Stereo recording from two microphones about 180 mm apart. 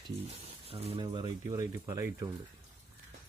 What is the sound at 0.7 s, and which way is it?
Speech, 30° right (ahead or behind).